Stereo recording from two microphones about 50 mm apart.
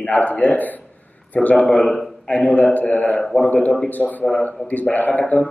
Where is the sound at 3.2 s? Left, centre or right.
Centre.